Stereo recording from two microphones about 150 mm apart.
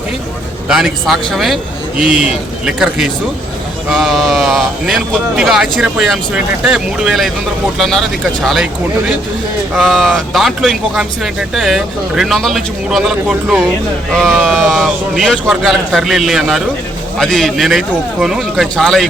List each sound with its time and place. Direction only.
0.7 s speech: centre (ahead or behind)